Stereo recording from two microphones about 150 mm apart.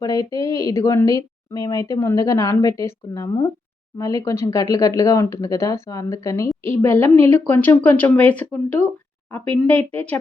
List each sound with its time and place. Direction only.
0.0 s a woman's voice: 25° left (ahead or behind)